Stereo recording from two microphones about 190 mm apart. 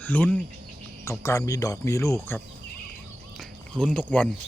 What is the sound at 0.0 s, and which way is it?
Speech, 10° left (ahead or behind).